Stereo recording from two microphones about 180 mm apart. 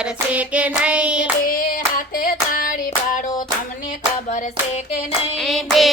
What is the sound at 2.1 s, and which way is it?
Hands, 50° left (ahead or behind).